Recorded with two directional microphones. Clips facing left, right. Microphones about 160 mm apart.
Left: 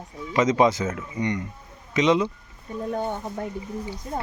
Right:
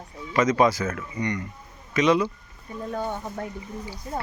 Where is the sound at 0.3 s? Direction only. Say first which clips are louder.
Left 1 dB; 20° left (ahead or behind).